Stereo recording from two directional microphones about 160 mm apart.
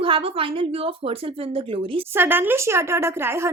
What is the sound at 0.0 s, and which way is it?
A woman's voice, 35° right (ahead or behind).